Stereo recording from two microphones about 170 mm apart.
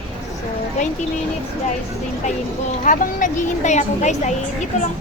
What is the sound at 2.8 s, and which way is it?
A woman's voice, 50° left (ahead or behind).